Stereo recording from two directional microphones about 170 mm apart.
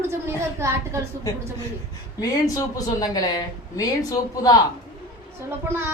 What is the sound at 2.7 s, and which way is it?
A woman's voice, 25° left (ahead or behind).